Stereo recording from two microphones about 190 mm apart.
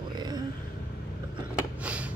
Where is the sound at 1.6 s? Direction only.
5° right (ahead or behind).